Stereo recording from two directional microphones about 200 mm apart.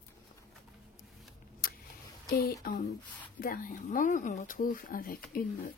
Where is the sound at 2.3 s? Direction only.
50° left (ahead or behind).